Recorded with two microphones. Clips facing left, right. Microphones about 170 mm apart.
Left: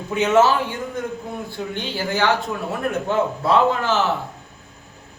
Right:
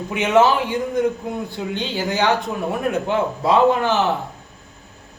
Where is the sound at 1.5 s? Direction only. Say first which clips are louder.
Right 2 dB; 20° right (ahead or behind).